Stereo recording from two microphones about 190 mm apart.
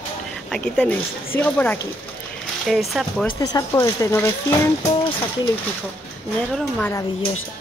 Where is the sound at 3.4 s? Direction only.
20° left (ahead or behind).